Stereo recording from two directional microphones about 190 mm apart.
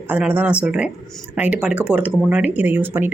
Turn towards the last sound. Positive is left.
turn(degrees=-10)  # may be behind; listen again after turning